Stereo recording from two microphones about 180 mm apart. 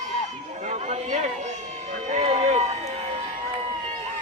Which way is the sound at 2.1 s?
35° right (ahead or behind).